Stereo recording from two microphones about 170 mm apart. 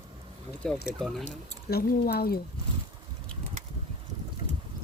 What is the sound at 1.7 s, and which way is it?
Speech, 65° left (ahead or behind).